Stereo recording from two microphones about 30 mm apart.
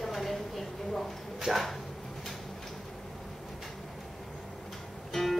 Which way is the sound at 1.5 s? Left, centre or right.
Centre.